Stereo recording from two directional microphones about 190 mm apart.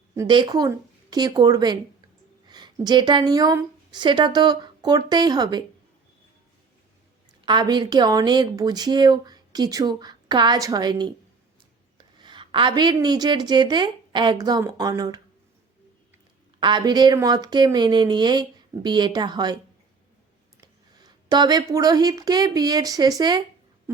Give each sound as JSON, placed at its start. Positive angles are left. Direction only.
{"t": 0.1, "sound": "a woman's voice", "side_deg": -20}
{"t": 7.4, "sound": "a woman's voice", "side_deg": -25}
{"t": 12.2, "sound": "a woman's voice", "side_deg": -25}
{"t": 16.6, "sound": "a woman's voice", "side_deg": -25}
{"t": 20.6, "sound": "speech", "side_deg": -20}